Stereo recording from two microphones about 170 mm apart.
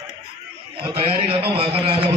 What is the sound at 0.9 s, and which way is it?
A man's voice, 35° right (ahead or behind).